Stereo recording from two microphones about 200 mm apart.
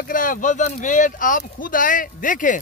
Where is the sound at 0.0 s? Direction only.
40° left (ahead or behind).